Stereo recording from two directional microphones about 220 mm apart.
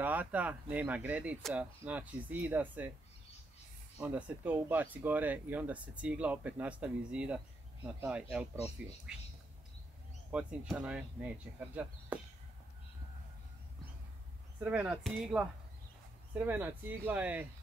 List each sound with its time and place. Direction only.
0.0 s speech: 5° right (ahead or behind)
4.0 s speech: 5° right (ahead or behind)
10.3 s speech: 5° right (ahead or behind)
14.6 s speech: 5° right (ahead or behind)